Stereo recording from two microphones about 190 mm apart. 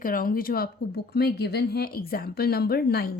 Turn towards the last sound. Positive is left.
turn(degrees=55)  # may be behind; listen again after turning